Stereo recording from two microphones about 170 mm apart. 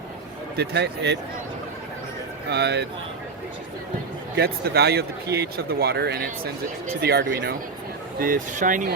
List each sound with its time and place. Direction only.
0.5 s a man's voice: 75° right (ahead or behind)
2.5 s a man's voice: 80° right
4.4 s speech: 70° right (ahead or behind)
8.2 s speech: 50° right (ahead or behind)